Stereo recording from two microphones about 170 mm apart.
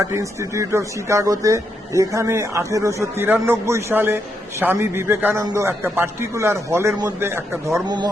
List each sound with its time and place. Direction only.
0.0 s speech: 15° right (ahead or behind)
7.9 s speech: 25° right (ahead or behind)